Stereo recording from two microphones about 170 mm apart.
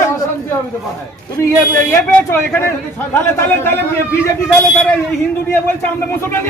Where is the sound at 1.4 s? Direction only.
15° left (ahead or behind).